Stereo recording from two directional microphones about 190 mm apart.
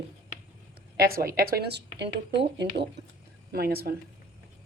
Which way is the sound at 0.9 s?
50° right (ahead or behind).